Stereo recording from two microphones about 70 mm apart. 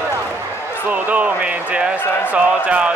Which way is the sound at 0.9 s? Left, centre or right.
Right.